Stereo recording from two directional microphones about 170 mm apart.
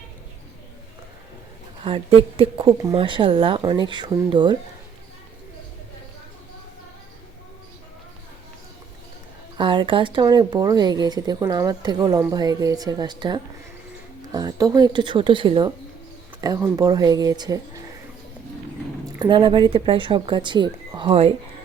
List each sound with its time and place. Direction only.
1.8 s speech: 30° right (ahead or behind)
9.6 s speech: 30° right (ahead or behind)
19.2 s speech: 30° right (ahead or behind)